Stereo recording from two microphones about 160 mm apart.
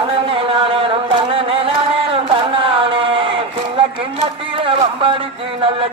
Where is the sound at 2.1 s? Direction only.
35° right (ahead or behind).